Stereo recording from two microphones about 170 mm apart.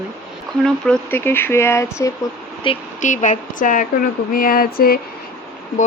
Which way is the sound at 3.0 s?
50° left (ahead or behind).